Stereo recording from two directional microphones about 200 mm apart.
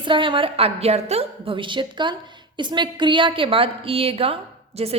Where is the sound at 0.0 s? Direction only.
25° right (ahead or behind).